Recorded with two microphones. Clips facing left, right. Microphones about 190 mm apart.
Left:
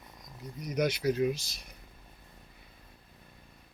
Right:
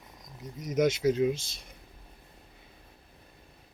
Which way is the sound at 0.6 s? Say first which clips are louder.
Right 4 dB; 20° right (ahead or behind).